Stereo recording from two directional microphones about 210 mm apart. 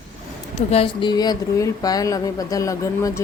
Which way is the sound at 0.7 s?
25° left (ahead or behind).